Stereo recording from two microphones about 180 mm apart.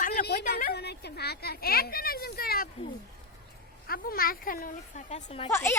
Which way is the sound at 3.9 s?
55° left (ahead or behind).